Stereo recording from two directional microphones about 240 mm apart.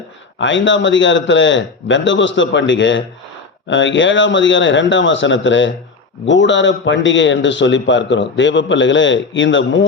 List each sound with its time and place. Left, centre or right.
0.3 s a man's voice: left